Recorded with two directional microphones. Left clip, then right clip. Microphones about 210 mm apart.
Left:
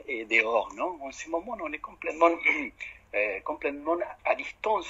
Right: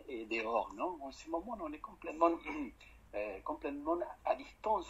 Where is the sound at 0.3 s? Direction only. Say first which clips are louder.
Left 11 dB; 45° left (ahead or behind).